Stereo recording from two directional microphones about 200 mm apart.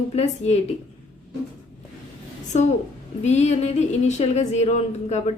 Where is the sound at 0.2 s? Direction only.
30° left (ahead or behind).